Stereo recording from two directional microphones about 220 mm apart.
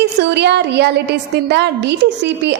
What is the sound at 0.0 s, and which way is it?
A woman's voice, 50° right (ahead or behind).